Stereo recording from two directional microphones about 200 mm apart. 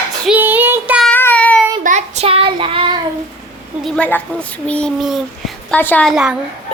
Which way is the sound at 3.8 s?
5° left (ahead or behind).